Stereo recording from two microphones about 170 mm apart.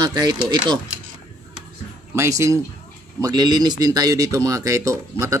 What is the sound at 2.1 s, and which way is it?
Speech, 15° right (ahead or behind).